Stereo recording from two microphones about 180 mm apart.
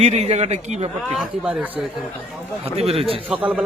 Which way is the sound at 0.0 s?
35° right (ahead or behind).